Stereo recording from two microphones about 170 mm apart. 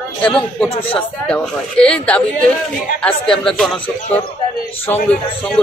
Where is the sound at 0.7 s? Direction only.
30° left (ahead or behind).